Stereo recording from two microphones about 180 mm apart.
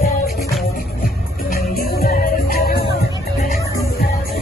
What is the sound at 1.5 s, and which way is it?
Music, 55° left (ahead or behind).